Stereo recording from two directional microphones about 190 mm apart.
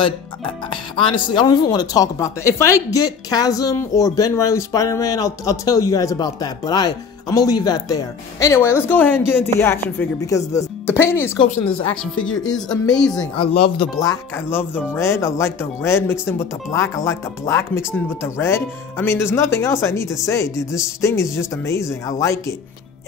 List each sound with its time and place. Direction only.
0.7 s speech: 25° left (ahead or behind); by 12.3 s 5° left (ahead or behind)
13.1 s speech: 20° left (ahead or behind)
13.5 s speech: 30° left (ahead or behind)
14.0 s speech: 15° left (ahead or behind)